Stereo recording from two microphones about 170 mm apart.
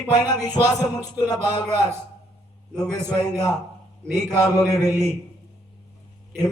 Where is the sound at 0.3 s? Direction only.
25° left (ahead or behind).